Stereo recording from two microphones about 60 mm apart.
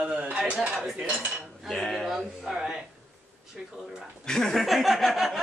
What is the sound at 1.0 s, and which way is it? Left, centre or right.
Dishes, right.